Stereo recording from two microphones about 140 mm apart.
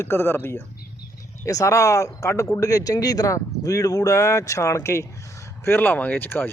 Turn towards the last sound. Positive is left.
turn(degrees=15)  # may be behind; listen again after turning